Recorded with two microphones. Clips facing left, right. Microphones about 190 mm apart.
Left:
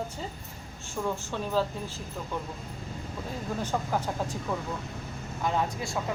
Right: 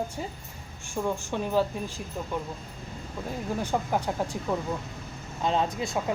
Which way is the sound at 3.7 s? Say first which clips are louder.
Right 3 dB; 15° right (ahead or behind).